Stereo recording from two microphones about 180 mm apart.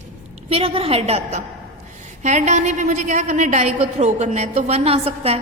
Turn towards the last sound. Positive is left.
turn(degrees=-35)  # may be behind; listen again after turning